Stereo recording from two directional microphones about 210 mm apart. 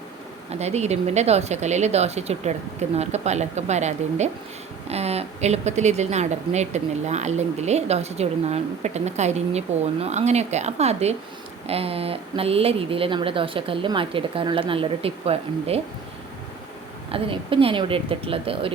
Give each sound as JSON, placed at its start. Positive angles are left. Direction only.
{"t": 0.5, "sound": "a woman's voice", "side_deg": -30}
{"t": 17.1, "sound": "a woman's voice", "side_deg": -25}